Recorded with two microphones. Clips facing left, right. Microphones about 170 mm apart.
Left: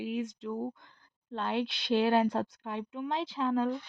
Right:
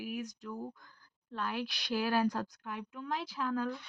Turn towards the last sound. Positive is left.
turn(degrees=25)  # may be behind; listen again after turning